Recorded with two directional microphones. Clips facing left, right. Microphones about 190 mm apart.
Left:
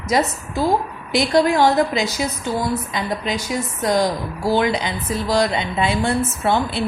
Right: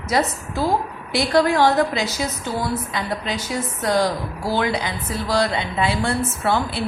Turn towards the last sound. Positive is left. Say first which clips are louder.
# left 2 dB
turn(degrees=20)  # may be behind; listen again after turning